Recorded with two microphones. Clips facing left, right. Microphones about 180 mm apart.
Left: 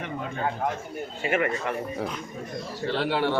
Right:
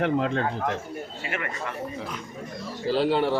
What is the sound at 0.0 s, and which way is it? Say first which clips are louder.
Speech: right 9 dB; 85° right.